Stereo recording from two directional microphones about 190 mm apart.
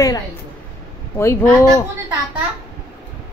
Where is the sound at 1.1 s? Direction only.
15° left (ahead or behind).